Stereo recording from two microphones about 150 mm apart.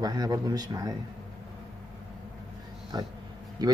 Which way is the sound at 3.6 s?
25° right (ahead or behind).